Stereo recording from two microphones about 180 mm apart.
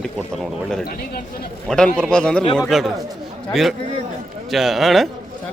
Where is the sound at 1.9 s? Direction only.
5° left (ahead or behind).